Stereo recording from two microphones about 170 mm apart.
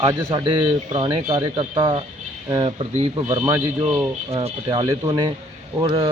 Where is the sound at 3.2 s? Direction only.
15° right (ahead or behind).